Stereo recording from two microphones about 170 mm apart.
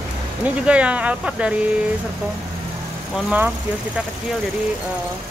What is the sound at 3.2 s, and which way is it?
Speech, 10° right (ahead or behind).